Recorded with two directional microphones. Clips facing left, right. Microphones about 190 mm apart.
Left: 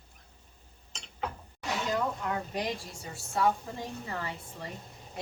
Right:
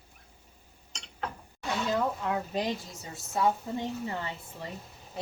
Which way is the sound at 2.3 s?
20° right (ahead or behind).